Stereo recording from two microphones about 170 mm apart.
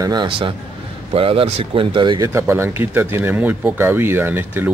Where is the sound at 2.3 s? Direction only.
15° right (ahead or behind).